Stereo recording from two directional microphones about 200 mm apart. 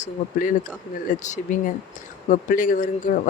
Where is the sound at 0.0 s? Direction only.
40° left (ahead or behind).